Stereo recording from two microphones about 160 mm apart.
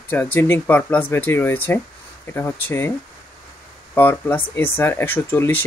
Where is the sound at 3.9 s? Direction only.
10° left (ahead or behind).